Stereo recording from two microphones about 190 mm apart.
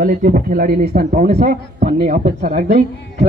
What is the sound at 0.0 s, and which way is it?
A man's voice, 45° right (ahead or behind).